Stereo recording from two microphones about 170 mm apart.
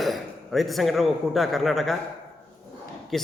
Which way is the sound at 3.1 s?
Centre (ahead or behind).